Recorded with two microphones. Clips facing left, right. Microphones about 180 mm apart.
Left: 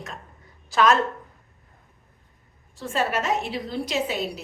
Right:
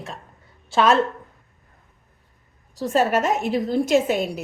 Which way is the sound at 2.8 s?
40° right (ahead or behind).